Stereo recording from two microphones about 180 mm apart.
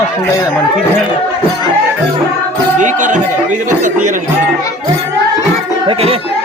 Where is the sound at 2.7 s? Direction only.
45° right (ahead or behind).